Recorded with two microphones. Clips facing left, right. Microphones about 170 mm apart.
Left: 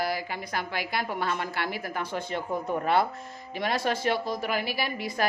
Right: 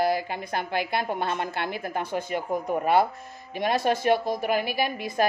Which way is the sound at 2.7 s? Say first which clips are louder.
Right 3 dB; 15° right (ahead or behind).